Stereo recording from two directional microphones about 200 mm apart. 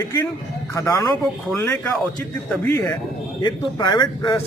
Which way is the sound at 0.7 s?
15° left (ahead or behind).